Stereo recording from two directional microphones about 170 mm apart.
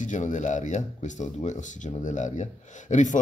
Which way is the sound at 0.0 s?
45° left (ahead or behind).